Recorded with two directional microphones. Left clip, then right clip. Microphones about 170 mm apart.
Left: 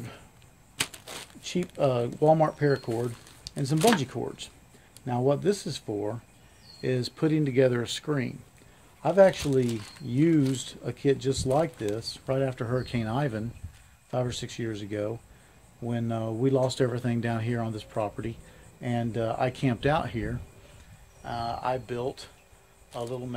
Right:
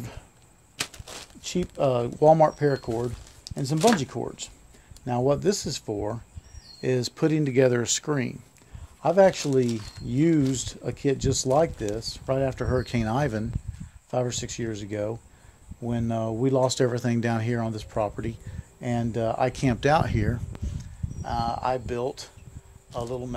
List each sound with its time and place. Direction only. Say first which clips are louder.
1.4 s speech: right 2 dB; 45° right (ahead or behind); by 20.3 s 65° right (ahead or behind)
21.2 s speech: right 4 dB; 50° right (ahead or behind)